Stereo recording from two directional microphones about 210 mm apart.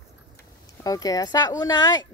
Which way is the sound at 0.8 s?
15° left (ahead or behind).